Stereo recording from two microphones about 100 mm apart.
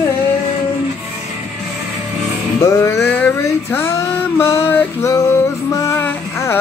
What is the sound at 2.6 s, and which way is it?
Music, 30° left (ahead or behind).